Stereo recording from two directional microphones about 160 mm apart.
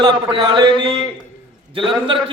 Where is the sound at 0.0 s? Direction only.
30° right (ahead or behind).